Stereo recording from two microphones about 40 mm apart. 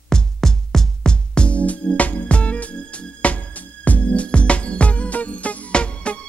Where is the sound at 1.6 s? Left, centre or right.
Left.